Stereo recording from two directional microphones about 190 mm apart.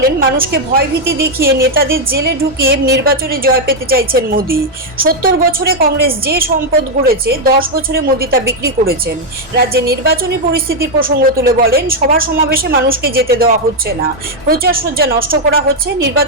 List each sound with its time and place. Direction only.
0.0 s a woman's voice: 55° right (ahead or behind)